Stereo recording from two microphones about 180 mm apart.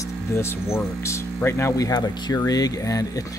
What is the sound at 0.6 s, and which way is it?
Speech, 5° right (ahead or behind).